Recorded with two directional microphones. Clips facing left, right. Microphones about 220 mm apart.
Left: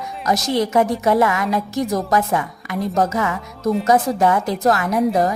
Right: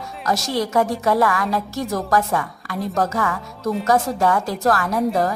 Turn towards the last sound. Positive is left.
turn(degrees=20)  # may be behind; listen again after turning